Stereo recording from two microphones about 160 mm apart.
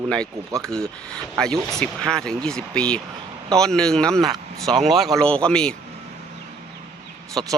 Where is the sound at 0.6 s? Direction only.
5° left (ahead or behind).